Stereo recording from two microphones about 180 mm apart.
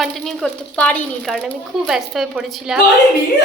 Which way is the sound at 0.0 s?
Centre (ahead or behind).